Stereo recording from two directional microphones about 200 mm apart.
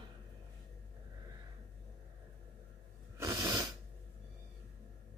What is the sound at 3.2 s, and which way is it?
Sneeze, 15° right (ahead or behind).